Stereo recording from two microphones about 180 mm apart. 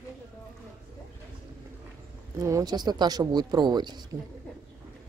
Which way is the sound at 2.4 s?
20° right (ahead or behind).